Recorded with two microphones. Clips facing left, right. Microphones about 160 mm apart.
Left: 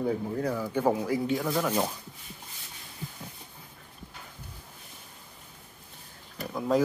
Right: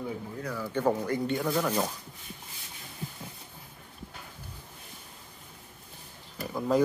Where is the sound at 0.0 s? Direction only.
30° left (ahead or behind).